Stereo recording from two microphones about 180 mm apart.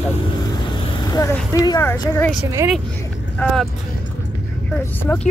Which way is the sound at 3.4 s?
5° left (ahead or behind).